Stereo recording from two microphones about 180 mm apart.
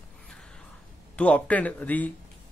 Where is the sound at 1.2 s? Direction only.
5° left (ahead or behind).